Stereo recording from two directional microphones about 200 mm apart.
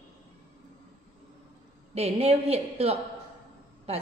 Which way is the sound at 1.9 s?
30° right (ahead or behind).